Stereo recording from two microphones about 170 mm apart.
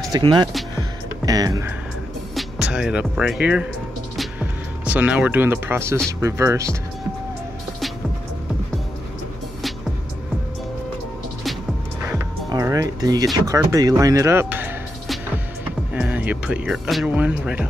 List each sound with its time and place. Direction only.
0.1 s speech: 25° right (ahead or behind)
0.7 s music: 20° right (ahead or behind)
2.3 s speech: 5° right (ahead or behind)
4.2 s music: 10° right (ahead or behind)
6.2 s speech: 15° right (ahead or behind)
12.1 s music: 15° right (ahead or behind)
13.7 s speech: 20° right (ahead or behind)
15.9 s speech: 10° right (ahead or behind)